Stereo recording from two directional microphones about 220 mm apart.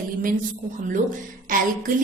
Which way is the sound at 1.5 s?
40° right (ahead or behind).